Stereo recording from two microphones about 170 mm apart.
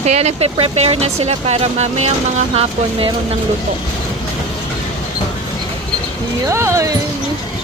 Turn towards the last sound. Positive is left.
turn(degrees=-15)  # may be behind; listen again after turning